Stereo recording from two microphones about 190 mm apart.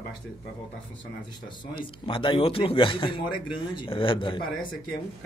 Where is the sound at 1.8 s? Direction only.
25° left (ahead or behind).